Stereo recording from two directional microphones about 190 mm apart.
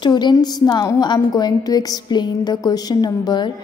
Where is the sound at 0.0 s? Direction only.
25° left (ahead or behind).